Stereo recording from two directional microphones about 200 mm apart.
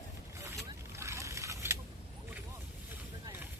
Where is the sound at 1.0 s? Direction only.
15° right (ahead or behind).